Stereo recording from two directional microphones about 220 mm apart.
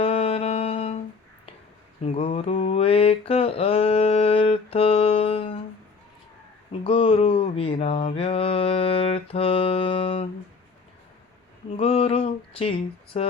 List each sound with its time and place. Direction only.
0.0 s music: 25° left (ahead or behind)
2.0 s mantra: 25° left (ahead or behind)
6.8 s mantra: 25° left (ahead or behind)
11.7 s a sound: 25° left (ahead or behind)
13.1 s mantra: 30° left (ahead or behind)